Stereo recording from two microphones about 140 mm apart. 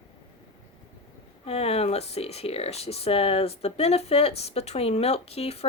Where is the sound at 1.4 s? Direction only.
50° left (ahead or behind).